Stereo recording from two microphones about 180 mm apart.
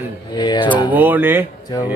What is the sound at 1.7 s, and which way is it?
Speech, 20° left (ahead or behind).